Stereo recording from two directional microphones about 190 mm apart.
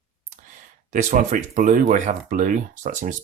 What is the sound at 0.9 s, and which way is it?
Speech, 40° right (ahead or behind).